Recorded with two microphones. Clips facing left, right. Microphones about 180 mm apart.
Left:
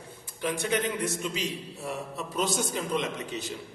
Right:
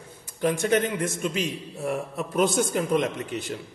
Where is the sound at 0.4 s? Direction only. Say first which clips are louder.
Right 6 dB; 45° right (ahead or behind).